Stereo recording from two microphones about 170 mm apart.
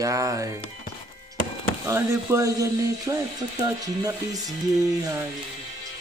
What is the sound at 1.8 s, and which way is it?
A man's voice, 15° right (ahead or behind).